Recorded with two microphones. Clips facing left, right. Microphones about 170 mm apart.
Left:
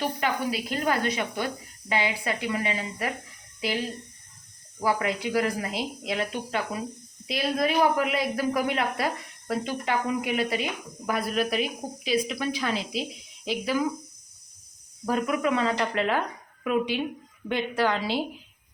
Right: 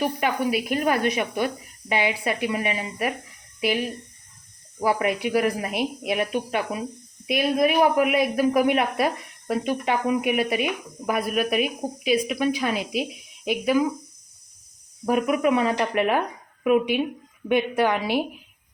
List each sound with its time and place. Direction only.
0.0 s speech: 20° right (ahead or behind)
15.0 s speech: 20° right (ahead or behind)
17.7 s speech: 20° right (ahead or behind)